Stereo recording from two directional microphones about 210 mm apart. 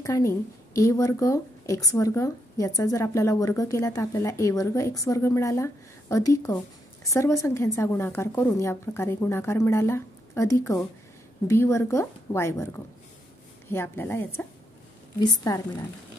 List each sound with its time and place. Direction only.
0.0 s a woman's voice: 15° left (ahead or behind)